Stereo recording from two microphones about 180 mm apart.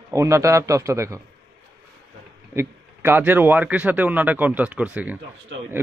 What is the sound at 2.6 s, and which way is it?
Speech, 10° right (ahead or behind).